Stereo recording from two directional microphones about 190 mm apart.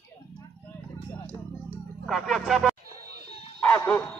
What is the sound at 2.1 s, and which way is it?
Speech, centre (ahead or behind).